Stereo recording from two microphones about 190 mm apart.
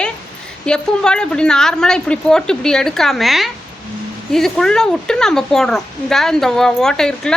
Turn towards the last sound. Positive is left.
turn(degrees=5)  # may be behind; listen again after turning